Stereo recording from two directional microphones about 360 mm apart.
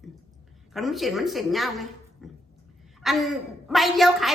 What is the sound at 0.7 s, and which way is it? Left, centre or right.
A woman's voice, centre.